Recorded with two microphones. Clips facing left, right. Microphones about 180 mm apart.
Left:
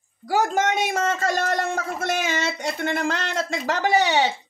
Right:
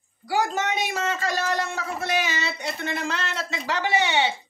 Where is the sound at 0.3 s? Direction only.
45° left (ahead or behind).